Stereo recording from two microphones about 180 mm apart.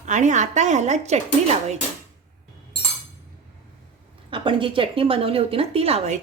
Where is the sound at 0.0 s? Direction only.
40° right (ahead or behind).